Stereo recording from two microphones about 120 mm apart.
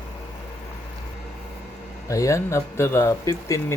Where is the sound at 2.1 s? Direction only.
25° left (ahead or behind).